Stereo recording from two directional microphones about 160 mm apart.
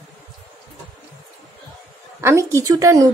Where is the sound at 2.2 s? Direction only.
15° right (ahead or behind).